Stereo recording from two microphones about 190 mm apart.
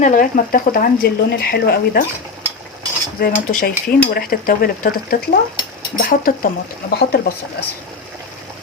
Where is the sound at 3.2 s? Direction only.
50° left (ahead or behind).